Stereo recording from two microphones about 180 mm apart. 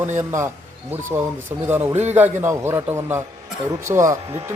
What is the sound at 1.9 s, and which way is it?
Speech, 40° right (ahead or behind).